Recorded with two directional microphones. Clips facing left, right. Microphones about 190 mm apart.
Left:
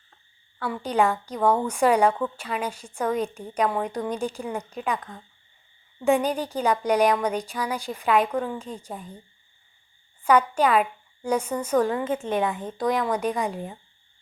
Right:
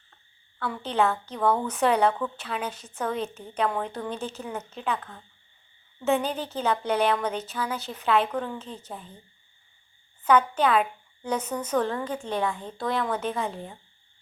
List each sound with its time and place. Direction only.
0.6 s a woman's voice: 10° left (ahead or behind)
10.2 s a woman's voice: 10° left (ahead or behind)
12.0 s a woman's voice: 25° left (ahead or behind)